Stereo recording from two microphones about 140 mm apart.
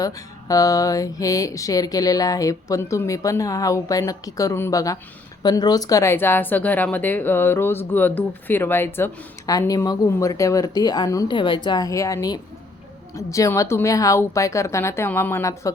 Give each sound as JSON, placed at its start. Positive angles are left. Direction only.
{"t": 0.0, "sound": "speech", "side_deg": 25}
{"t": 9.5, "sound": "speech", "side_deg": 25}